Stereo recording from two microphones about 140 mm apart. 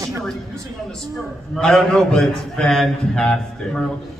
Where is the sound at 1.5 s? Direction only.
5° left (ahead or behind).